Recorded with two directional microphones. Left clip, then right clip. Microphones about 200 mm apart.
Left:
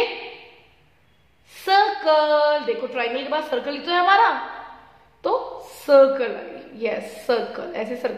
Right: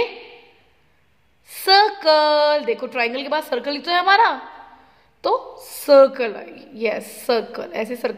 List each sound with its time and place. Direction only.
1.5 s a woman's voice: 40° right (ahead or behind)